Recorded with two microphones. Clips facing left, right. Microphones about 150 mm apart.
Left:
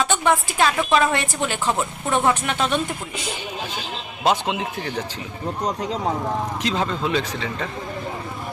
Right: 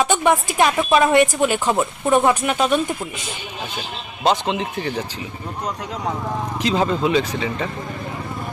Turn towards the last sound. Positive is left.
turn(degrees=-5)  # may be behind; listen again after turning